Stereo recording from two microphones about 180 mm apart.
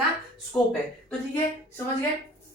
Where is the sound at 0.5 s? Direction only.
10° left (ahead or behind).